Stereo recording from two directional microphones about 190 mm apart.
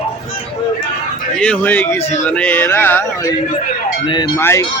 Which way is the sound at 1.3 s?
5° left (ahead or behind).